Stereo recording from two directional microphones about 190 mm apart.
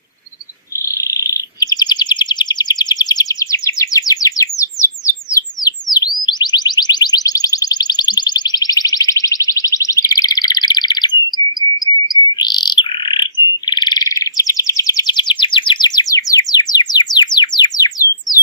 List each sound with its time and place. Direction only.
0.9 s bird: 15° left (ahead or behind)